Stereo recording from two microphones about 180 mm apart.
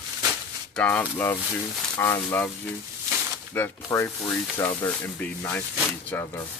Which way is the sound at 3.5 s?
15° left (ahead or behind).